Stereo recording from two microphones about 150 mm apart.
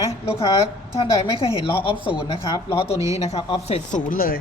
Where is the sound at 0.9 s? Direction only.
35° left (ahead or behind).